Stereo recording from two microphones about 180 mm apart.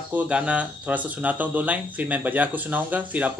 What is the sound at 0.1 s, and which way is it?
Speech, 5° right (ahead or behind).